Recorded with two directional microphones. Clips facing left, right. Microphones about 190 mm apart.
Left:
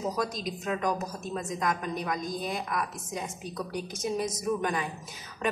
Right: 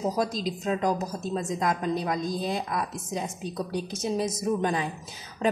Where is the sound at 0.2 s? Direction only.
30° right (ahead or behind).